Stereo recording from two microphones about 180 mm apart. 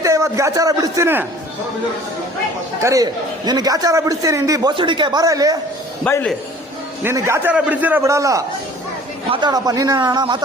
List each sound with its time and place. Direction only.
0.0 s a man's voice: 15° right (ahead or behind)
2.8 s a man's voice: 20° right (ahead or behind)
6.1 s a man's voice: 10° left (ahead or behind)
7.0 s a man's voice: 15° right (ahead or behind)